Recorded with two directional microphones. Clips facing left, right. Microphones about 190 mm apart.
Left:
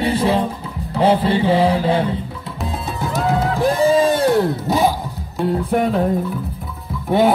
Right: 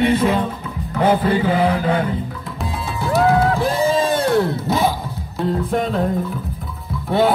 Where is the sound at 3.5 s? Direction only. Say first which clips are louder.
Left 3 dB; 15° left (ahead or behind).